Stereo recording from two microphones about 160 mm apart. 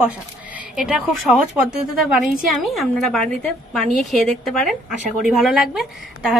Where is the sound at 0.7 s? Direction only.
5° right (ahead or behind).